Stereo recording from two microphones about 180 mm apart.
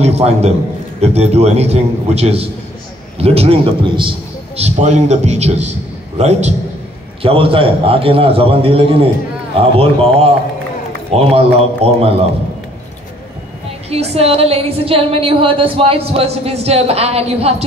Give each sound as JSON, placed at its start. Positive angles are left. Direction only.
{"t": 0.0, "sound": "a man's voice", "side_deg": -35}
{"t": 13.8, "sound": "a woman's voice", "side_deg": -35}